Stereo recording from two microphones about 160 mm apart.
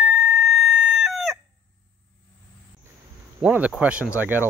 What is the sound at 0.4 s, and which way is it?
Chicken, centre (ahead or behind).